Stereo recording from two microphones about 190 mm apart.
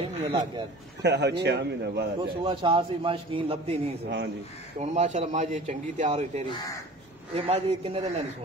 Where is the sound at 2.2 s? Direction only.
25° right (ahead or behind).